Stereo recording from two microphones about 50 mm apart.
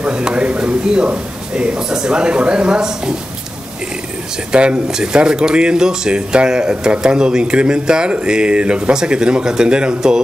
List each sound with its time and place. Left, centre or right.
0.0 s speech: centre
4.5 s speech: right